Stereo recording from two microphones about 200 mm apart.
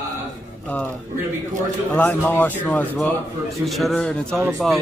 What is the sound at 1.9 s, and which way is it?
A man's voice, 10° left (ahead or behind).